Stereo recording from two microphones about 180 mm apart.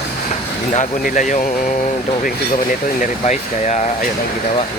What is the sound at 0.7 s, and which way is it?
Speech, 45° left (ahead or behind).